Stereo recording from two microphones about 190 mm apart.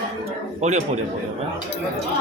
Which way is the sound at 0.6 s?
35° right (ahead or behind).